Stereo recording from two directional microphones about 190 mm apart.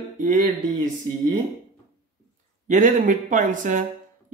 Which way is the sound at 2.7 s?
45° right (ahead or behind).